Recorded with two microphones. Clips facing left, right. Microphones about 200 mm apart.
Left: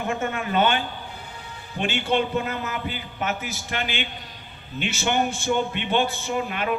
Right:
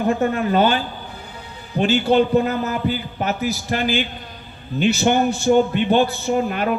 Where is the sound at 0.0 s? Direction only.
35° right (ahead or behind).